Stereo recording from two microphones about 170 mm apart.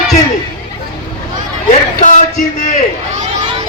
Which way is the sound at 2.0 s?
50° left (ahead or behind).